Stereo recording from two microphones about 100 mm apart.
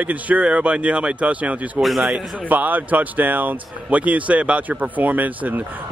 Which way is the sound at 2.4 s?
15° right (ahead or behind).